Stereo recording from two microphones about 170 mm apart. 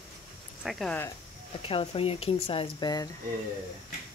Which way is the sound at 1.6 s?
35° left (ahead or behind).